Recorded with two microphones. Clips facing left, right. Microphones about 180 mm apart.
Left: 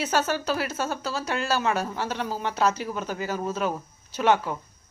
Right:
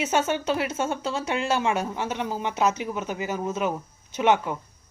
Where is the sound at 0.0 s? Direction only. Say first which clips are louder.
Right 1 dB; 25° right (ahead or behind).